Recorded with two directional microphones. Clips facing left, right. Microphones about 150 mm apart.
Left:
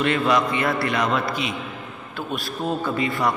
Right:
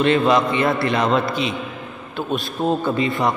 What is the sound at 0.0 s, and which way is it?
A man's voice, 25° right (ahead or behind).